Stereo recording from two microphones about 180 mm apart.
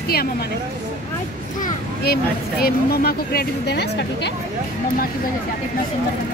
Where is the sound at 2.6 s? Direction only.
55° left (ahead or behind).